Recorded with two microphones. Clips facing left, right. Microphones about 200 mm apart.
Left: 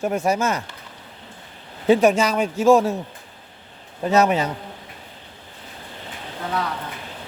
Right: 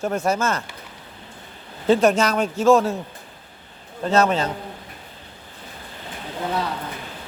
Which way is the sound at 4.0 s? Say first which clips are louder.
Left 1 dB; 15° left (ahead or behind).